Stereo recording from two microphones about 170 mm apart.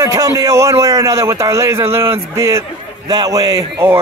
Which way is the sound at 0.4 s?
15° right (ahead or behind).